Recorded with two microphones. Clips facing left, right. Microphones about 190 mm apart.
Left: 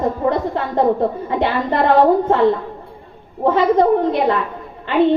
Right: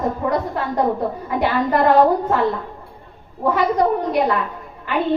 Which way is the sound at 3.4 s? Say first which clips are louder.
Left 4 dB; 25° left (ahead or behind).